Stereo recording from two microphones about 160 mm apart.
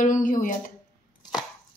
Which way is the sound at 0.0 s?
55° left (ahead or behind).